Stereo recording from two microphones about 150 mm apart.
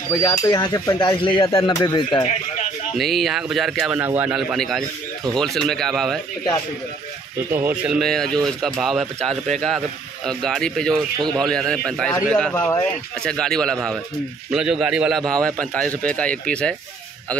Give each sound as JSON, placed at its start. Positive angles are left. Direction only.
{"t": 0.1, "sound": "speech", "side_deg": 25}
{"t": 1.6, "sound": "speech", "side_deg": 20}
{"t": 2.0, "sound": "speech", "side_deg": 35}
{"t": 3.0, "sound": "speech", "side_deg": 0}
{"t": 7.5, "sound": "speech", "side_deg": -10}
{"t": 8.0, "sound": "speech", "side_deg": 5}
{"t": 12.5, "sound": "speech", "side_deg": 25}
{"t": 13.2, "sound": "speech", "side_deg": 5}